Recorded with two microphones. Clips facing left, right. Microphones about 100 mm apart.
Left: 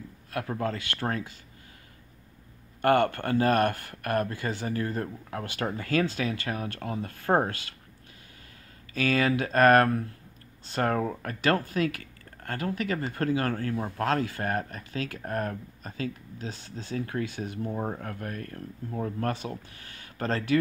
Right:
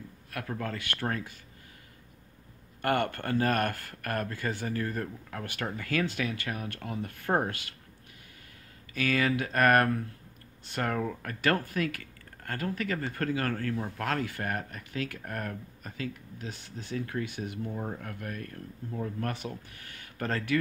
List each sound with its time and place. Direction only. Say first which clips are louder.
0.3 s speech: left 5 dB; 25° left (ahead or behind)
2.8 s speech: left 6 dB; 30° left (ahead or behind)
8.9 s speech: left 3 dB; 25° left (ahead or behind)